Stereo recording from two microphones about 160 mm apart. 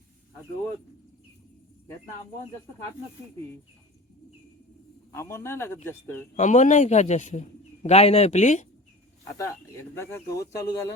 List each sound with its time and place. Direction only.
5.1 s a man's voice: 15° left (ahead or behind)
6.3 s a man's voice: 50° left (ahead or behind)
9.4 s speech: 15° left (ahead or behind)